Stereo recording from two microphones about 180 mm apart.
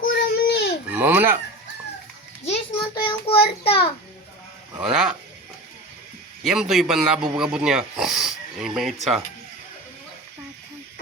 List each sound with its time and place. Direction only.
0.0 s baby cry: 55° left (ahead or behind)
0.9 s a sound: 10° right (ahead or behind)
2.5 s child singing: 30° left (ahead or behind)
4.8 s speech: 5° right (ahead or behind)
6.4 s speech: 5° right (ahead or behind)